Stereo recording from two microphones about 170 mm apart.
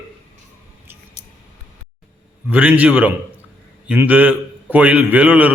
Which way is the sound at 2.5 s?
10° right (ahead or behind).